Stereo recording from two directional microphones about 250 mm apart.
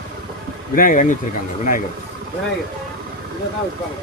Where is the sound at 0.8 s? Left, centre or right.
Left.